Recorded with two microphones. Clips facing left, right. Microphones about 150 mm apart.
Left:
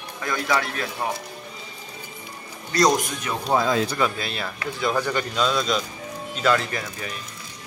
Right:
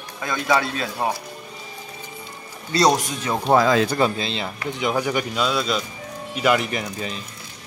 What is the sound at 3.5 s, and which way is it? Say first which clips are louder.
Speech: right 4 dB; 85° right.